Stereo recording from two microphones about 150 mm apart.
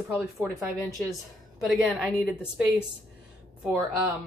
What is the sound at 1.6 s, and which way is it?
Speech, 5° right (ahead or behind).